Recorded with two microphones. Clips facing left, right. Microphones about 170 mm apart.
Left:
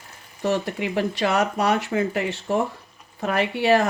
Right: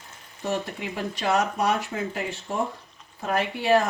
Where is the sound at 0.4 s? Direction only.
75° left (ahead or behind).